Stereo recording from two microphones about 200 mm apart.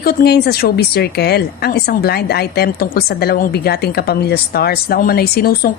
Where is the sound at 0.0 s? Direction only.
50° left (ahead or behind).